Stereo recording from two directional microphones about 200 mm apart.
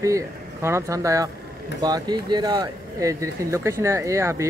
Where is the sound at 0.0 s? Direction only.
15° right (ahead or behind).